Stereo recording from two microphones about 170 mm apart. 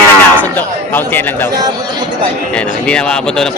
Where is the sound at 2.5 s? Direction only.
5° left (ahead or behind).